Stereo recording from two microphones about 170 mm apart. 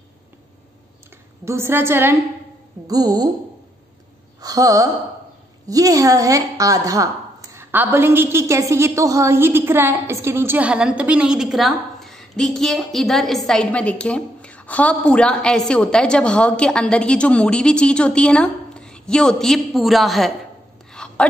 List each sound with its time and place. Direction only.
1.4 s a woman's voice: 15° right (ahead or behind)
4.4 s a woman's voice: 20° right (ahead or behind); by 20.3 s centre (ahead or behind)
20.9 s whispering: 5° left (ahead or behind)